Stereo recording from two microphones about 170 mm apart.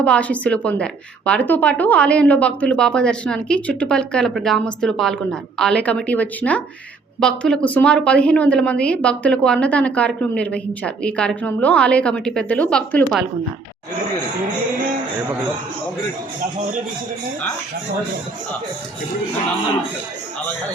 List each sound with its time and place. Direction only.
0.0 s a woman's voice: 5° left (ahead or behind)